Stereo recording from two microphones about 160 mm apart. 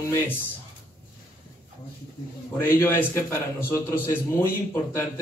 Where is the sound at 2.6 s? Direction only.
15° left (ahead or behind).